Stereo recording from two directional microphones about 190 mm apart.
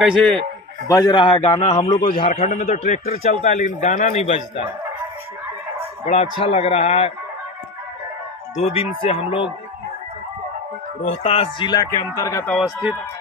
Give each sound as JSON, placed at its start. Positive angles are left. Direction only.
{"t": 0.8, "sound": "speech", "side_deg": 20}
{"t": 2.2, "sound": "a man's voice", "side_deg": 50}
{"t": 6.0, "sound": "a man's voice", "side_deg": 35}
{"t": 8.6, "sound": "speech", "side_deg": 30}
{"t": 11.0, "sound": "speech", "side_deg": 30}
{"t": 12.5, "sound": "speech", "side_deg": -5}